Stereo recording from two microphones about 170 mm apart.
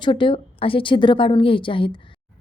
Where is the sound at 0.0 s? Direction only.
30° left (ahead or behind).